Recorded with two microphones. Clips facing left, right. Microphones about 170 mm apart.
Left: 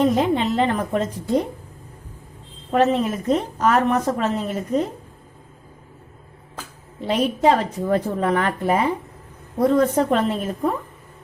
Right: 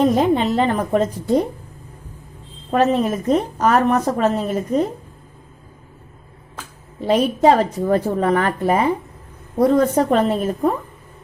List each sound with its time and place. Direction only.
0.0 s a woman's voice: 40° right (ahead or behind)
2.7 s a woman's voice: 40° right (ahead or behind)
7.0 s a woman's voice: 40° right (ahead or behind)